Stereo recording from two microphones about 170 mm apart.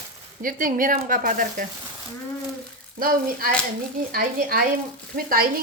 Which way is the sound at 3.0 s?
60° right (ahead or behind).